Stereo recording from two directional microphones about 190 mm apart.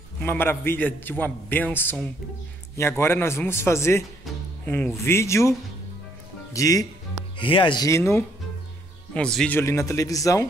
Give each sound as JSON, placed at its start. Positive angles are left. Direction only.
{"t": 0.2, "sound": "a man's voice", "side_deg": 10}
{"t": 6.5, "sound": "a man's voice", "side_deg": 20}